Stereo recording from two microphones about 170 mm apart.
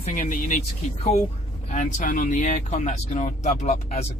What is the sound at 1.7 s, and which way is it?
Speech, 45° left (ahead or behind).